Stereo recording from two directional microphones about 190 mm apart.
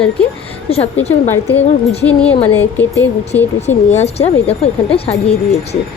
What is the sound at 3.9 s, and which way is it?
Speech, 35° left (ahead or behind).